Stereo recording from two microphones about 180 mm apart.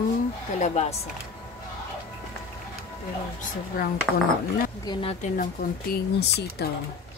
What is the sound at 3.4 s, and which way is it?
Speech, 55° left (ahead or behind).